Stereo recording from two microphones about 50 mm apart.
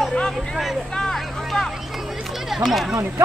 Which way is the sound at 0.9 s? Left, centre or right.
Centre.